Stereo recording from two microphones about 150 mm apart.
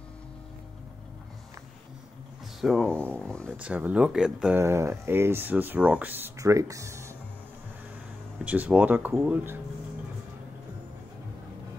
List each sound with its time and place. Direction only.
2.6 s speech: centre (ahead or behind)
3.5 s speech: 10° right (ahead or behind)
4.6 s speech: 20° right (ahead or behind)
8.5 s speech: 10° right (ahead or behind)